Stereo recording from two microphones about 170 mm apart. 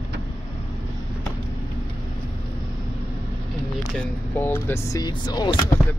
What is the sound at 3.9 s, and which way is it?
Speech, 10° left (ahead or behind).